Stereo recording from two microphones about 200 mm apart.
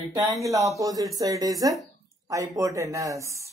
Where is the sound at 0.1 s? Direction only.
15° right (ahead or behind).